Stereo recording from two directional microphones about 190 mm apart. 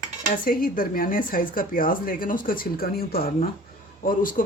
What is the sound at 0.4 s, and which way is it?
Speech, 50° left (ahead or behind).